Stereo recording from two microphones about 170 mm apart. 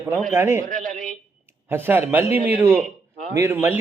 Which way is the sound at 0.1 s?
5° left (ahead or behind).